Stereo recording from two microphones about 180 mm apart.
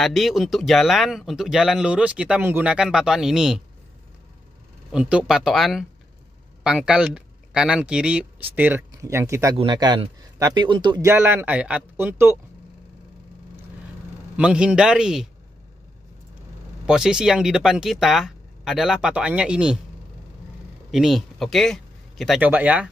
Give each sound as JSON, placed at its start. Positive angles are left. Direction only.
{"t": 0.0, "sound": "speech", "side_deg": 0}
{"t": 4.9, "sound": "a man's voice", "side_deg": -5}
{"t": 11.1, "sound": "a man's voice", "side_deg": -10}
{"t": 14.3, "sound": "speech", "side_deg": -5}
{"t": 16.8, "sound": "speech", "side_deg": -5}
{"t": 20.9, "sound": "speech", "side_deg": 0}
{"t": 22.4, "sound": "a man's voice", "side_deg": -10}